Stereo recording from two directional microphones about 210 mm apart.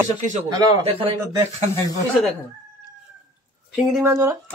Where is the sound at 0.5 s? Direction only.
25° right (ahead or behind).